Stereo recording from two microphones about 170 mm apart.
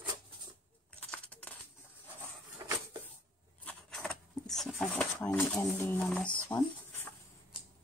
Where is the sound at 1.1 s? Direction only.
10° left (ahead or behind).